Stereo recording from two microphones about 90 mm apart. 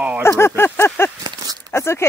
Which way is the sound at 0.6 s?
25° left (ahead or behind).